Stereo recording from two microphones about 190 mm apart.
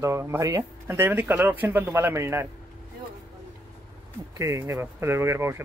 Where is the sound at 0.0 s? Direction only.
15° right (ahead or behind).